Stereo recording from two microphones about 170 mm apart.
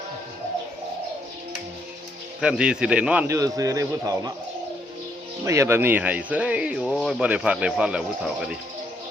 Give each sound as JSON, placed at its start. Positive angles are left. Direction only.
{"t": 2.4, "sound": "speech", "side_deg": -5}
{"t": 3.3, "sound": "speech", "side_deg": -20}
{"t": 5.5, "sound": "speech", "side_deg": -15}